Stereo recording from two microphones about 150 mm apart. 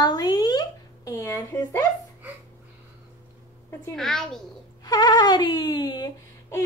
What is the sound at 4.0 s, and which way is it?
Speech, 5° left (ahead or behind).